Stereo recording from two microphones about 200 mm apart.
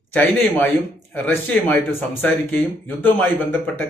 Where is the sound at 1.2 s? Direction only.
10° left (ahead or behind).